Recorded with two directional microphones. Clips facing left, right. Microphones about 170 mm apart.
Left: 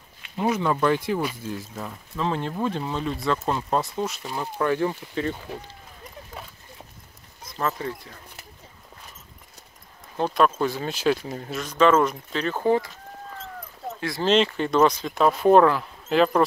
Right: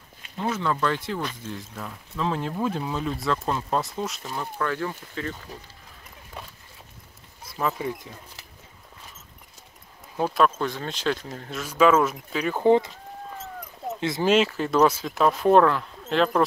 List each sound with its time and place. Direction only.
0.4 s speech: 15° left (ahead or behind)
4.6 s speech: 20° left (ahead or behind)
7.4 s speech: 10° right (ahead or behind)
10.1 s speech: 5° right (ahead or behind)
11.6 s speech: 10° right (ahead or behind)
13.3 s a sound: 5° right (ahead or behind)
13.9 s speech: 20° right (ahead or behind)
14.2 s speech: 5° right (ahead or behind)